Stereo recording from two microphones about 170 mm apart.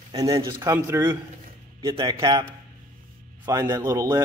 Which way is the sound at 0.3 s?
30° right (ahead or behind).